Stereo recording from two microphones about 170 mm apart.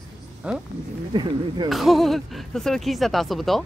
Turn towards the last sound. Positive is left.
turn(degrees=0)  # may be behind; listen again after turning